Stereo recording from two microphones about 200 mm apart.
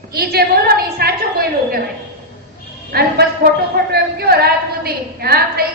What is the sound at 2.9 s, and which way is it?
Speech, 50° right (ahead or behind).